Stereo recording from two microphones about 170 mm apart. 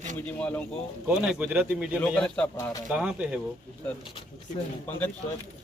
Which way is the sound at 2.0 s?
5° left (ahead or behind).